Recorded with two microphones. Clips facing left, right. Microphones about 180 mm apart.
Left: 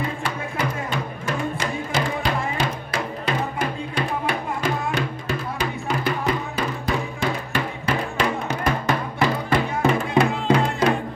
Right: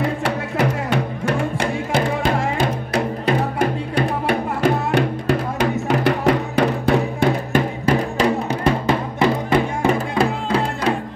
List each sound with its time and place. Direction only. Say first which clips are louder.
0.0 s music: right 6 dB; 75° right (ahead or behind)
7.2 s music: right 6 dB; 45° right (ahead or behind)